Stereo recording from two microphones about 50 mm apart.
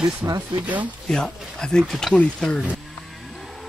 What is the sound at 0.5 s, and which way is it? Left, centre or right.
Speech, right.